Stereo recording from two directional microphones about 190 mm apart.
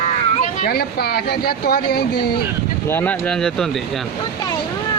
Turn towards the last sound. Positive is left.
turn(degrees=5)  # may be behind; listen again after turning